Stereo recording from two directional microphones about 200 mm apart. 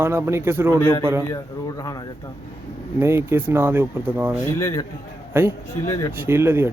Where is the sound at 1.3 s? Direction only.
15° left (ahead or behind).